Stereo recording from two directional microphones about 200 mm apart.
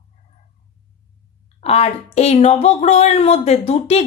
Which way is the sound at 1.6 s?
30° left (ahead or behind).